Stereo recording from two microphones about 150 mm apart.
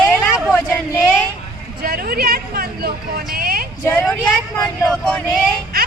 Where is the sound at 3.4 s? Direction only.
80° right.